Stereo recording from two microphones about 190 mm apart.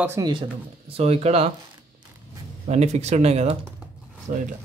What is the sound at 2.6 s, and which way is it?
Speech, 35° right (ahead or behind).